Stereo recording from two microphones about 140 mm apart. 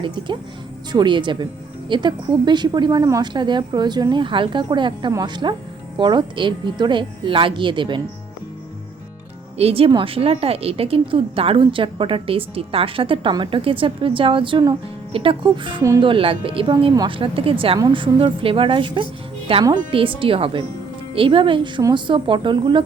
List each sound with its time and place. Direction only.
0.9 s a woman's voice: 35° right (ahead or behind)
9.6 s a woman's voice: 45° right (ahead or behind)
15.8 s speech: 25° right (ahead or behind)
16.0 s a woman's voice: 40° right (ahead or behind)